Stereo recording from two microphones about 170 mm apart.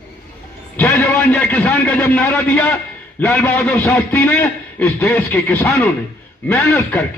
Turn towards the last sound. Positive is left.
turn(degrees=15)  # may be behind; listen again after turning